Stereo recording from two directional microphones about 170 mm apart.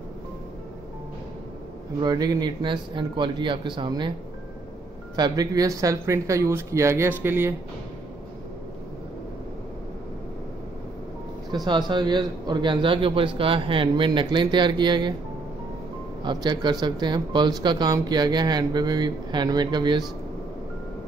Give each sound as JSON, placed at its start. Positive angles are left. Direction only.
{"t": 2.0, "sound": "speech", "side_deg": -25}
{"t": 5.1, "sound": "speech", "side_deg": -25}
{"t": 11.6, "sound": "speech", "side_deg": -25}
{"t": 16.2, "sound": "speech", "side_deg": -25}